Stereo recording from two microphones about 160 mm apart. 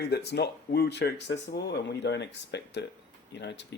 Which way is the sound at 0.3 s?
90° left.